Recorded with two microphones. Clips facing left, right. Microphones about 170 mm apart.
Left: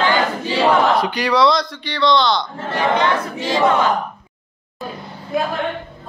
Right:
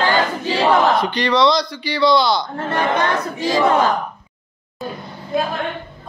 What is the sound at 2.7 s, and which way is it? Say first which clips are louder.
Speech: left 1 dB; 50° right (ahead or behind).